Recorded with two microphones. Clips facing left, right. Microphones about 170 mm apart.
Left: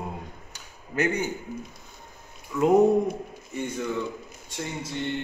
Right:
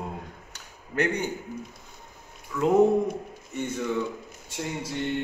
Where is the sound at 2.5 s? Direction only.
10° left (ahead or behind).